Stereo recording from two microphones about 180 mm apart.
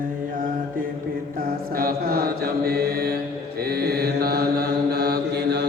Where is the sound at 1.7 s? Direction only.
55° right (ahead or behind).